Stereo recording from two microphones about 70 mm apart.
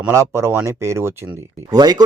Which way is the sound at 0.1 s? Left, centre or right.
Right.